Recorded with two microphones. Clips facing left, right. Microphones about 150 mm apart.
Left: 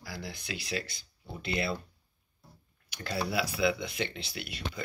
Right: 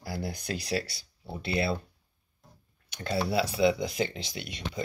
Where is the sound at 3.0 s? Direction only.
30° right (ahead or behind).